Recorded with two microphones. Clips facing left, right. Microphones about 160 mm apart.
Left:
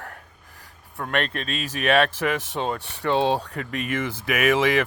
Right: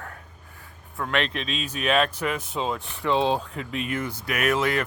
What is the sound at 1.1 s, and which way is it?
Speech, 50° left (ahead or behind).